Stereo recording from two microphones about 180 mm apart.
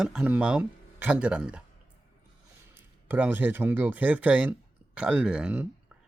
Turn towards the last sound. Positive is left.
turn(degrees=-5)  # may be behind; listen again after turning